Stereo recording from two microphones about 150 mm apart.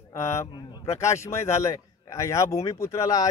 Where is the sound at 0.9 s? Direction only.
20° left (ahead or behind).